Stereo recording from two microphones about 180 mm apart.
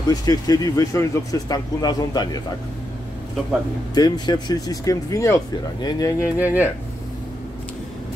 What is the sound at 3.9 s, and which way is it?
Speech, 20° left (ahead or behind).